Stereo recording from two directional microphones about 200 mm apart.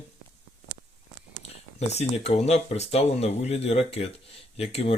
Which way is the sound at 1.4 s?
35° left (ahead or behind).